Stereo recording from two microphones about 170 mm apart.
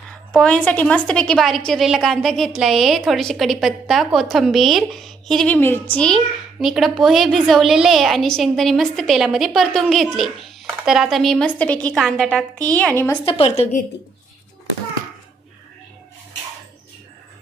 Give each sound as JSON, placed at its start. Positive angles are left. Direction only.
{"t": 0.3, "sound": "a woman's voice", "side_deg": 5}
{"t": 13.2, "sound": "a woman's voice", "side_deg": 35}